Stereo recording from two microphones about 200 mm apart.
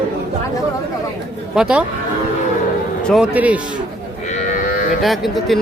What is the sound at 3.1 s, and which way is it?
Speech, 5° right (ahead or behind).